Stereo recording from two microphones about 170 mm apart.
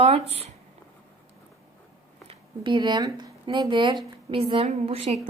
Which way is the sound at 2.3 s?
30° right (ahead or behind).